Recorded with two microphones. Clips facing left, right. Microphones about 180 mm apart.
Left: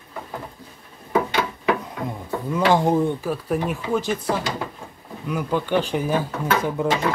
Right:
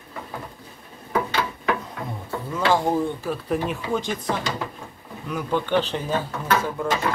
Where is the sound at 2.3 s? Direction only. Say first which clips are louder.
Left 3 dB; 15° left (ahead or behind).